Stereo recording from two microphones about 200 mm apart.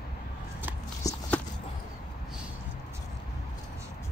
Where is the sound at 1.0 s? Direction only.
15° left (ahead or behind).